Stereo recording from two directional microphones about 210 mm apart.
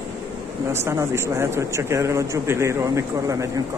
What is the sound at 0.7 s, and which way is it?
Speech, 15° right (ahead or behind).